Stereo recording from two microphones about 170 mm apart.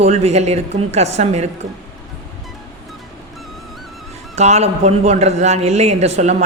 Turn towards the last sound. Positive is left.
turn(degrees=-40)  # may be behind; listen again after turning